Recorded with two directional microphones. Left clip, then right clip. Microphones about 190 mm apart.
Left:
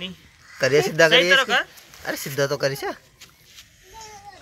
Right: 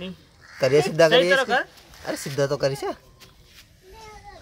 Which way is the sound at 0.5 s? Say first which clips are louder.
Even; centre (ahead or behind).